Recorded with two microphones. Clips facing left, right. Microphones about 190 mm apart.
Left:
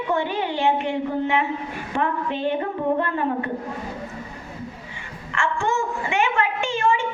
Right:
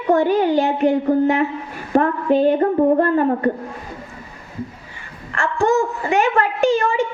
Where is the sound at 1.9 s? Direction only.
40° right (ahead or behind).